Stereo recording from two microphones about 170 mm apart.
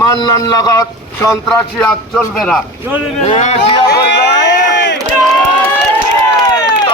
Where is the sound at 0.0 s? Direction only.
20° left (ahead or behind).